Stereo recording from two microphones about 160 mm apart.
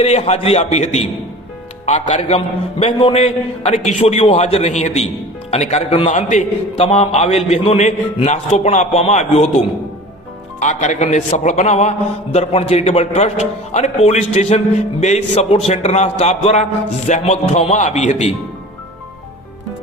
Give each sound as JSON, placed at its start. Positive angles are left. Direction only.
{"t": 0.0, "sound": "a man's voice", "side_deg": 40}